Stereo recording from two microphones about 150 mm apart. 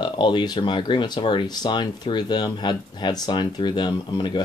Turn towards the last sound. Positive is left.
turn(degrees=30)  # may be behind; listen again after turning